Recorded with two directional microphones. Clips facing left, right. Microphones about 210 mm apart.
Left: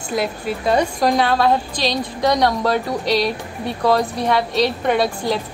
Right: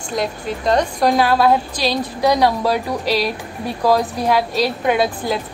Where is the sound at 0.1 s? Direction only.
5° left (ahead or behind).